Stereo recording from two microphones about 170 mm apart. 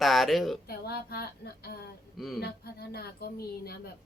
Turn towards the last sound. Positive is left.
turn(degrees=65)  # may be behind; listen again after turning